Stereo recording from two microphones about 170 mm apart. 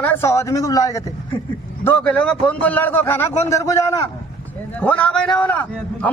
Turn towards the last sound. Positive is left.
turn(degrees=10)  # may be behind; listen again after turning